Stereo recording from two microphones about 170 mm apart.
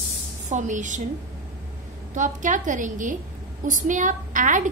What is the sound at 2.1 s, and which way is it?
A woman's voice, 45° right (ahead or behind).